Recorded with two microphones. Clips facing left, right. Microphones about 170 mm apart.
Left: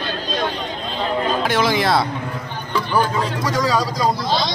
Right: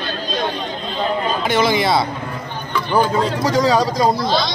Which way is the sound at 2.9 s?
25° right (ahead or behind).